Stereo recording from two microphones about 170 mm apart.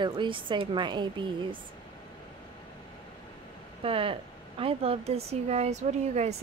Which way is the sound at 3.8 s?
30° right (ahead or behind).